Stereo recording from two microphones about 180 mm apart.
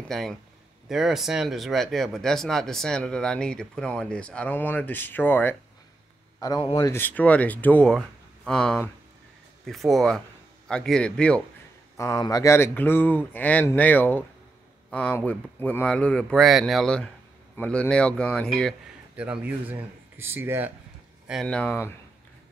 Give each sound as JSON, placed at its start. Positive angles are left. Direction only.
{"t": 0.1, "sound": "a man's voice", "side_deg": 0}
{"t": 12.0, "sound": "speech", "side_deg": 20}
{"t": 19.2, "sound": "speech", "side_deg": -10}
{"t": 21.3, "sound": "speech", "side_deg": 0}